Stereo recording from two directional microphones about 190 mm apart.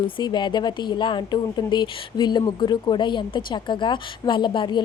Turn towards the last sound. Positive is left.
turn(degrees=25)  # may be behind; listen again after turning